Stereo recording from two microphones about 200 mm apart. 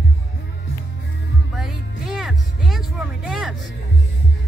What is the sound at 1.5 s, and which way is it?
Music, centre (ahead or behind).